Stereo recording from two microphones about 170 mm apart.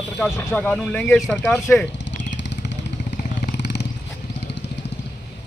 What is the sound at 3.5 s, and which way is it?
Vehicle, 85° left.